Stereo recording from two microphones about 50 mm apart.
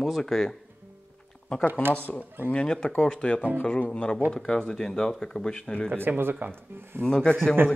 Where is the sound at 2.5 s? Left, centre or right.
Centre.